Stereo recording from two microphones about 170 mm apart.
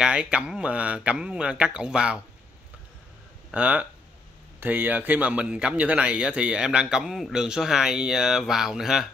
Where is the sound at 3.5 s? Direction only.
10° right (ahead or behind).